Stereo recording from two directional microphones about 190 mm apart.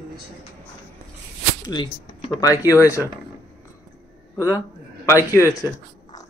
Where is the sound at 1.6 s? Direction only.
25° left (ahead or behind).